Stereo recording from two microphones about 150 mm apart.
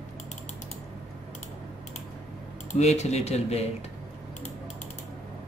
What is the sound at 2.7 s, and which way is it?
Speech, 50° left (ahead or behind).